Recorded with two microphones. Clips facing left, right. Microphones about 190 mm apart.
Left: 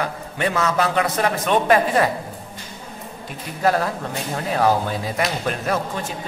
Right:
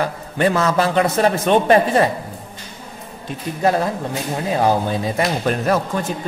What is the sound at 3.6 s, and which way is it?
A man's voice, 20° right (ahead or behind).